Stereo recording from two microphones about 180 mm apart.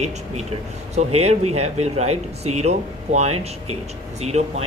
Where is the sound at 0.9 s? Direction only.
35° right (ahead or behind).